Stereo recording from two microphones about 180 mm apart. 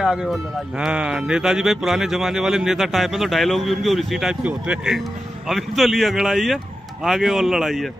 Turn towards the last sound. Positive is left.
turn(degrees=0)  # may be behind; listen again after turning